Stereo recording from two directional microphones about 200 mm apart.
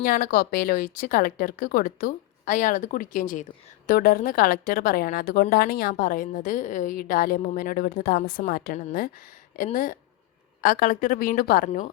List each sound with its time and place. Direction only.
0.0 s a woman's voice: 45° left (ahead or behind)